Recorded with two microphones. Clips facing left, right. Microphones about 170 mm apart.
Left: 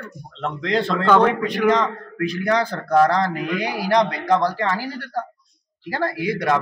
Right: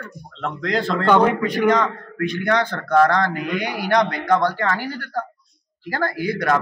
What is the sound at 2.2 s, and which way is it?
A man's voice, 35° left (ahead or behind).